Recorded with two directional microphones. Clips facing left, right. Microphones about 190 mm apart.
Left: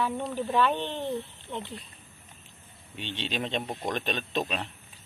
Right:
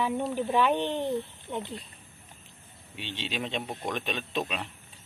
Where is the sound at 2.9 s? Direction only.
10° right (ahead or behind).